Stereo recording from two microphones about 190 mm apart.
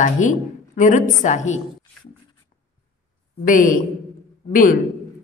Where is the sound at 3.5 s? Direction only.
45° left (ahead or behind).